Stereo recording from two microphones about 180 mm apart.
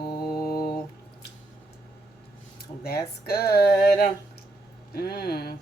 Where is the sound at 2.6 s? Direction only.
60° left (ahead or behind).